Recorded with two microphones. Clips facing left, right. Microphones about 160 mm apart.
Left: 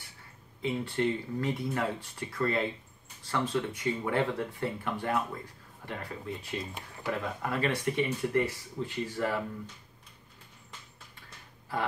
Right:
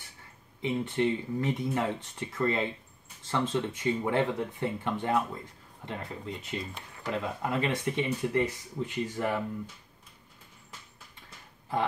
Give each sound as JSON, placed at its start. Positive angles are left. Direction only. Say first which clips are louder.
{"t": 0.6, "sound": "speech", "louder": "right 2 dB", "side_deg": -20}